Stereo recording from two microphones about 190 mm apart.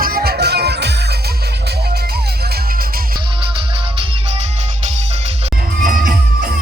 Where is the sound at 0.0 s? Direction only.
50° right (ahead or behind).